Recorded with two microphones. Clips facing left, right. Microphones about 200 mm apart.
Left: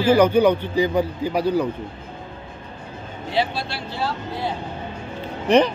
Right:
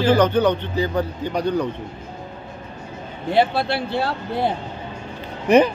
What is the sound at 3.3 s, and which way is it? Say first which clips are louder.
A man's voice: right 6 dB; 55° right (ahead or behind).